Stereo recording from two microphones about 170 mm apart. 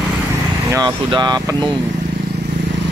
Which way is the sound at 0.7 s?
25° right (ahead or behind).